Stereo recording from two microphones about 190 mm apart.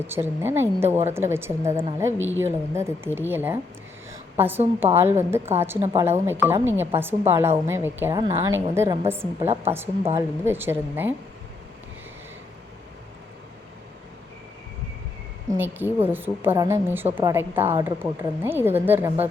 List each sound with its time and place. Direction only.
0.0 s a woman's voice: 10° right (ahead or behind)
2.1 s a woman's voice: 90° right
2.4 s a woman's voice: 15° right (ahead or behind)
15.5 s a woman's voice: 10° right (ahead or behind)